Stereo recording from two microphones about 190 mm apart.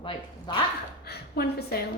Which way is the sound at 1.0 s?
55° left (ahead or behind).